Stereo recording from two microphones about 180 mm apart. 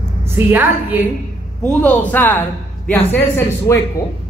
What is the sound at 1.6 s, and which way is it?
Speech, 5° left (ahead or behind).